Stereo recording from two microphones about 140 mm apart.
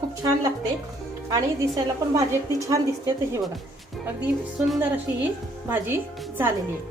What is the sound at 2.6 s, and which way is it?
Speech, 20° right (ahead or behind).